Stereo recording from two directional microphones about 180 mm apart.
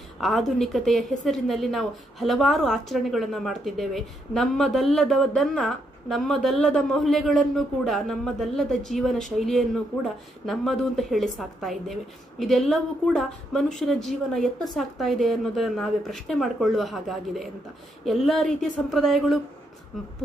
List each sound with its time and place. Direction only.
0.2 s a woman's voice: centre (ahead or behind)